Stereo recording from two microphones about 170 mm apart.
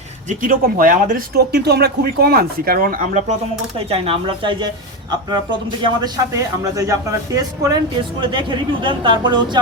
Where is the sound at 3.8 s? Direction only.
35° right (ahead or behind).